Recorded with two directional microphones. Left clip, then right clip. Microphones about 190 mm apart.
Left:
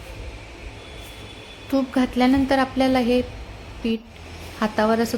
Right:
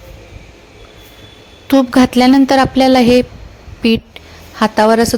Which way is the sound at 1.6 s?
45° right (ahead or behind).